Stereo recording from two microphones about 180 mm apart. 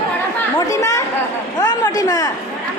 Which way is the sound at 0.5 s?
20° left (ahead or behind).